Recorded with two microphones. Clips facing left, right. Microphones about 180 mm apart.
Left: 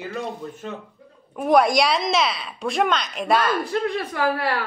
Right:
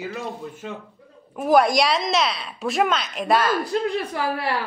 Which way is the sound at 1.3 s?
Centre (ahead or behind).